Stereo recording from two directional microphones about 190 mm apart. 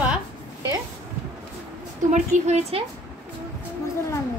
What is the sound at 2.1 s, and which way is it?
Speech, 35° right (ahead or behind).